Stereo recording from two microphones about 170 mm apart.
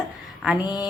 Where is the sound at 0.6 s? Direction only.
25° left (ahead or behind).